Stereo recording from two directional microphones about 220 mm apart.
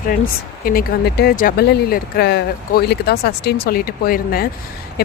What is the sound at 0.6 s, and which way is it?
Speech, 40° left (ahead or behind).